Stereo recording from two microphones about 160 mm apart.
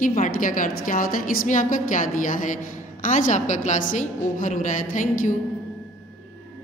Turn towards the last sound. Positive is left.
turn(degrees=55)  # may be behind; listen again after turning